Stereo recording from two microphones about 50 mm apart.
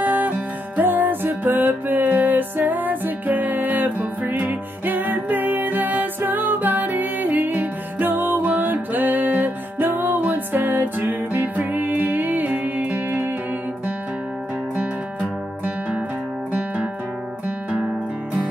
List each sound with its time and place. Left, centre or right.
0.0 s music: right